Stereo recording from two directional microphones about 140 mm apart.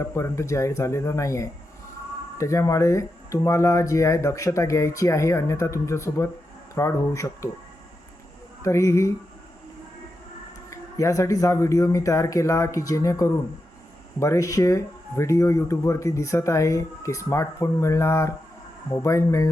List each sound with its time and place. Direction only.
0.0 s speech: 20° left (ahead or behind)
8.6 s speech: 20° left (ahead or behind)
10.7 s speech: 25° left (ahead or behind)